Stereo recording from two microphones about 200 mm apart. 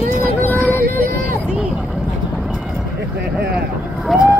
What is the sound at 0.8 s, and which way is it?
Vehicle, 45° right (ahead or behind).